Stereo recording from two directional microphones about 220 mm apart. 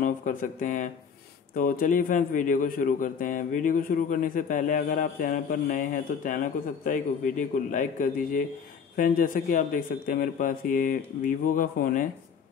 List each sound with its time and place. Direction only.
0.0 s a man's voice: 35° left (ahead or behind)